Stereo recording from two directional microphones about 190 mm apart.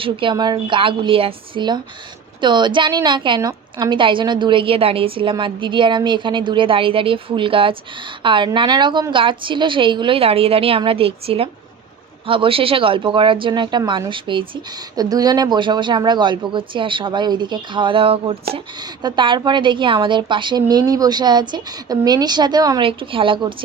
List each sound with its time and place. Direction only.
0.0 s speech: 25° right (ahead or behind)